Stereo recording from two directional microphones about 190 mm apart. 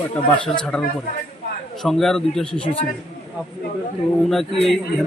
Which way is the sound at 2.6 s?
30° left (ahead or behind).